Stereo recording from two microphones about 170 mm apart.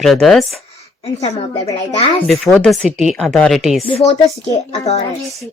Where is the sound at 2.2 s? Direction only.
5° left (ahead or behind).